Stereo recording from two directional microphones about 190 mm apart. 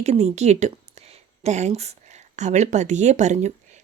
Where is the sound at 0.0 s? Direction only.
35° right (ahead or behind).